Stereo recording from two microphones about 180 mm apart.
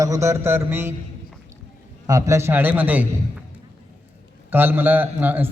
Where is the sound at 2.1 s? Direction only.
15° right (ahead or behind).